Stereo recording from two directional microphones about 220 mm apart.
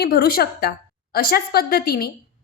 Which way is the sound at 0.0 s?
45° left (ahead or behind).